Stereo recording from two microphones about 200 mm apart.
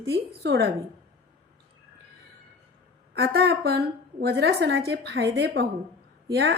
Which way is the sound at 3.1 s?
55° right (ahead or behind).